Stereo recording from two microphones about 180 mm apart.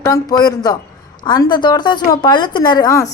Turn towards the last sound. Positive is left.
turn(degrees=20)  # may be behind; listen again after turning